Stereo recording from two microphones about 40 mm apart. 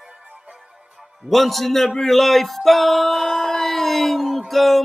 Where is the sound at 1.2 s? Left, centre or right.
Centre.